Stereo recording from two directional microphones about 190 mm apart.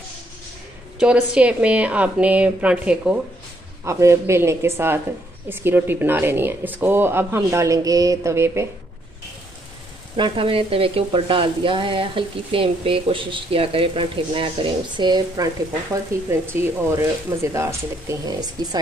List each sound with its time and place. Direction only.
0.9 s speech: 5° right (ahead or behind)
10.1 s speech: 25° right (ahead or behind)